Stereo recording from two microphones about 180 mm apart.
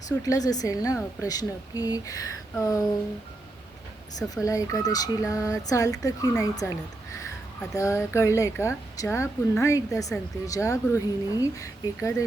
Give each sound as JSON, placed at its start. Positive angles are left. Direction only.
{"t": 0.2, "sound": "a woman's voice", "side_deg": 20}
{"t": 4.4, "sound": "a woman's voice", "side_deg": 20}